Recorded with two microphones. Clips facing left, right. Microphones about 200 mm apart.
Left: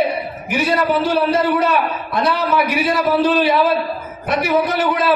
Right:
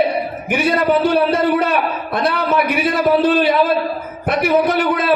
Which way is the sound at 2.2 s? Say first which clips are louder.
Right 1 dB; 55° right (ahead or behind).